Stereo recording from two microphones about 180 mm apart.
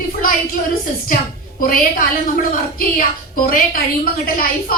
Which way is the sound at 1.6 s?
50° left (ahead or behind).